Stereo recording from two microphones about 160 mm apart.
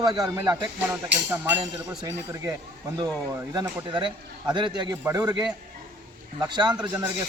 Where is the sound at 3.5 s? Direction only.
30° right (ahead or behind).